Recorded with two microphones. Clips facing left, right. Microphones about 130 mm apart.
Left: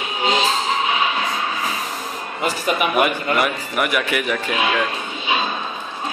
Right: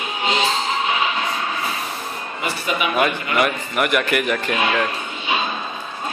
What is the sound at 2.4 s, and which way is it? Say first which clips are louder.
Speech: left 3 dB; 45° left (ahead or behind).